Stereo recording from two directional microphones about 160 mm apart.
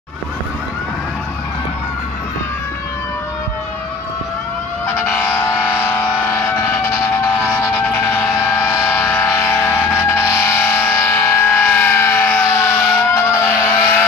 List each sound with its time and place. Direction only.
4.9 s siren: 10° left (ahead or behind)
8.4 s music: 20° left (ahead or behind)